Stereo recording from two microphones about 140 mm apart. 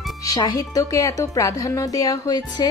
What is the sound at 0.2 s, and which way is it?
Speech, 25° left (ahead or behind).